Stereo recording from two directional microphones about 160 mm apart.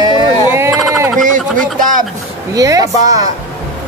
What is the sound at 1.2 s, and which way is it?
Speech, 55° right (ahead or behind).